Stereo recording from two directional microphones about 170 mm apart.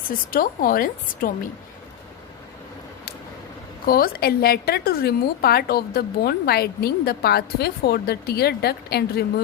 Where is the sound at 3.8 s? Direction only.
60° left (ahead or behind).